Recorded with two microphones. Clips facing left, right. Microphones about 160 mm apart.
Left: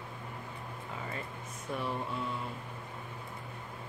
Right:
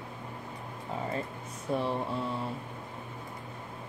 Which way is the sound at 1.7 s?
30° right (ahead or behind).